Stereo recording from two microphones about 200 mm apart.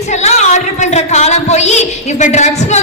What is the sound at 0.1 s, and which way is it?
A woman's voice, 35° left (ahead or behind).